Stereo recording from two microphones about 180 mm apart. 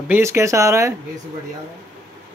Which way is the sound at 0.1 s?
15° right (ahead or behind).